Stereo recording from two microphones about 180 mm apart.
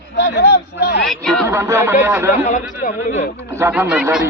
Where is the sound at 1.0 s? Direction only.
Centre (ahead or behind).